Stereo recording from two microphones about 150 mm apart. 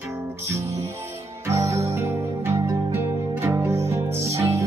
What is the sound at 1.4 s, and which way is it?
Music, 20° right (ahead or behind).